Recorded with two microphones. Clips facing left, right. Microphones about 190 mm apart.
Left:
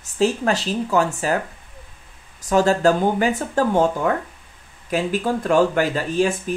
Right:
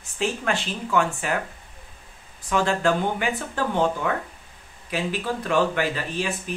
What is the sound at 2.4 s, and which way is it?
Speech, 40° left (ahead or behind).